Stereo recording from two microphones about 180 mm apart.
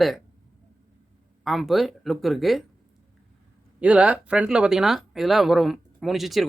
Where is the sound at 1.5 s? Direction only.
Centre (ahead or behind).